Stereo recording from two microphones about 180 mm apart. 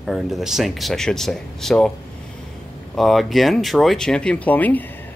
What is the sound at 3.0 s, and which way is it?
Speech, centre (ahead or behind).